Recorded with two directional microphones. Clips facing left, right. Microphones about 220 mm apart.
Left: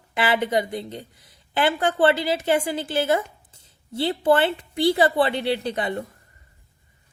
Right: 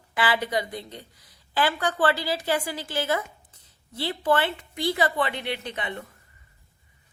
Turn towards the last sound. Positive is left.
turn(degrees=35)  # may be behind; listen again after turning